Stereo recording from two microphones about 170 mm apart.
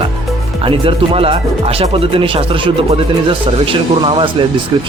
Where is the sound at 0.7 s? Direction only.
30° right (ahead or behind).